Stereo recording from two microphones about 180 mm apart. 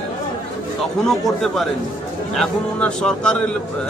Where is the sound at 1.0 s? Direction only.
Centre (ahead or behind).